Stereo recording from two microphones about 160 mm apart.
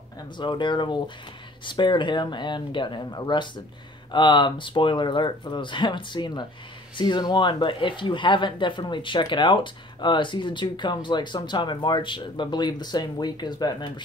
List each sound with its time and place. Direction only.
0.4 s speech: 30° left (ahead or behind)